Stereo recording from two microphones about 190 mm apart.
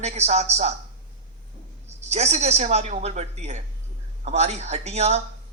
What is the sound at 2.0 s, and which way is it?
A man's voice, 35° right (ahead or behind).